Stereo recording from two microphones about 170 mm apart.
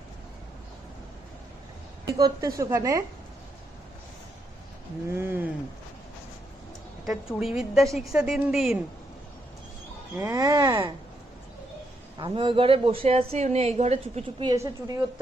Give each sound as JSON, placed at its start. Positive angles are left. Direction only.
{"t": 2.0, "sound": "speech", "side_deg": -20}
{"t": 5.1, "sound": "a sound", "side_deg": -15}
{"t": 7.1, "sound": "a woman's voice", "side_deg": -5}
{"t": 10.1, "sound": "speech", "side_deg": -20}
{"t": 12.2, "sound": "a woman's voice", "side_deg": -30}
{"t": 14.4, "sound": "speech", "side_deg": -20}